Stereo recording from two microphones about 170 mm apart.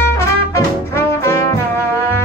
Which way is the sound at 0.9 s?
15° left (ahead or behind).